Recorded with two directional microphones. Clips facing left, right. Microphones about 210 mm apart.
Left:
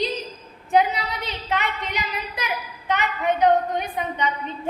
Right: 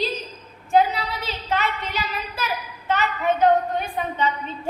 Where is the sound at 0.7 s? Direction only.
15° left (ahead or behind).